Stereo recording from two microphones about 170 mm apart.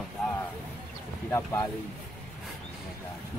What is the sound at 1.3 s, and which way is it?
Speech, 15° left (ahead or behind).